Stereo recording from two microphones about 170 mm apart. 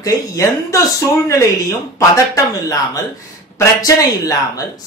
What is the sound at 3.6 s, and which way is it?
Speech, 20° left (ahead or behind).